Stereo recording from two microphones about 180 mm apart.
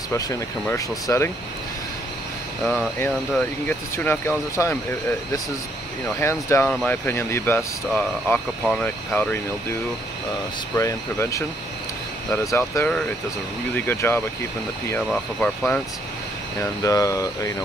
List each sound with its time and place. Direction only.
0.1 s speech: 15° left (ahead or behind)
2.6 s speech: centre (ahead or behind)
3.0 s speech: 10° left (ahead or behind)
6.1 s speech: 15° left (ahead or behind)
10.8 s speech: 15° left (ahead or behind)
12.4 s speech: 15° left (ahead or behind)
16.8 s speech: 20° left (ahead or behind)